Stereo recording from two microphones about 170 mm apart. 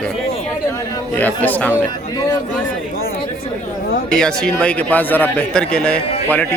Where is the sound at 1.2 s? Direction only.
10° left (ahead or behind).